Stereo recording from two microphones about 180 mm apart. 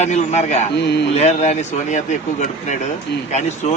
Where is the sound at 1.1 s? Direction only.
40° left (ahead or behind).